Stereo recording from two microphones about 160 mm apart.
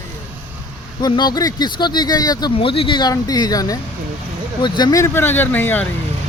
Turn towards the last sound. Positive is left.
turn(degrees=10)  # may be behind; listen again after turning